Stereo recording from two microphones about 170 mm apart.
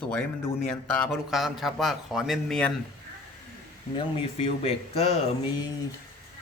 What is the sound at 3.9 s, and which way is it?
Speech, 35° left (ahead or behind).